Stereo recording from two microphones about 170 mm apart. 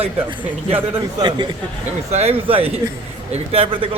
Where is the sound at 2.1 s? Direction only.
40° right (ahead or behind).